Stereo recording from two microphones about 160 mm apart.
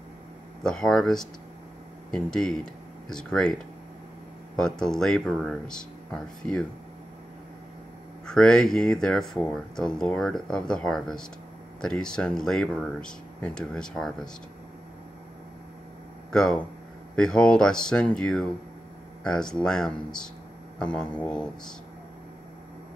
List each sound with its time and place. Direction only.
0.7 s speech: centre (ahead or behind)
8.3 s speech: 5° left (ahead or behind)
16.3 s speech: 5° left (ahead or behind)